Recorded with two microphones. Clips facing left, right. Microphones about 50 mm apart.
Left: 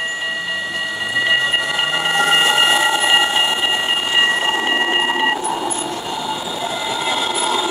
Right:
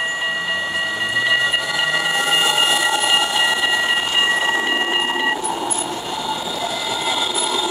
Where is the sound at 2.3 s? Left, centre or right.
Left.